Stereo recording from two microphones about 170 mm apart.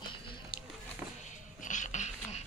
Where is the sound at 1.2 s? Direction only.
45° left (ahead or behind).